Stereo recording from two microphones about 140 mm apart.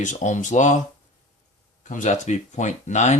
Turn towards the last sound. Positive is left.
turn(degrees=55)  # may be behind; listen again after turning